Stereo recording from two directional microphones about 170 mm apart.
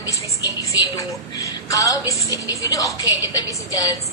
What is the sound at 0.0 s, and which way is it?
A woman's voice, 20° left (ahead or behind).